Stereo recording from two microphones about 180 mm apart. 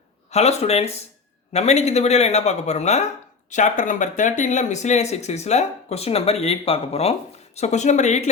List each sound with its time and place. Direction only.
0.3 s speech: 35° left (ahead or behind)